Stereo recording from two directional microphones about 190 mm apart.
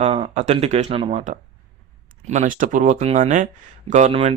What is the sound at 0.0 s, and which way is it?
Speech, 35° right (ahead or behind).